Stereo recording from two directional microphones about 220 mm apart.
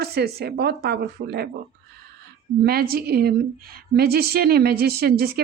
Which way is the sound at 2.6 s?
45° right (ahead or behind).